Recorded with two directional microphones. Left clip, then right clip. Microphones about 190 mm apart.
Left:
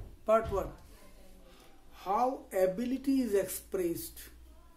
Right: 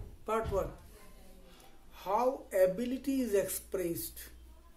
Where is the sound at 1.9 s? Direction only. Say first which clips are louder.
Left 1 dB; 5° left (ahead or behind).